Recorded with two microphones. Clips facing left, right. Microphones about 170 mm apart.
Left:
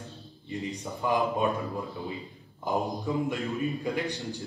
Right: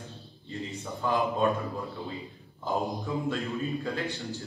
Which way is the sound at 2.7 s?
15° left (ahead or behind).